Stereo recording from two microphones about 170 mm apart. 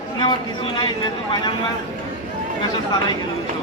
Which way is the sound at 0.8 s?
25° left (ahead or behind).